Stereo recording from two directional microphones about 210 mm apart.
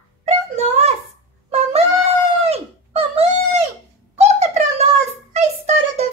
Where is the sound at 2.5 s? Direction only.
30° right (ahead or behind).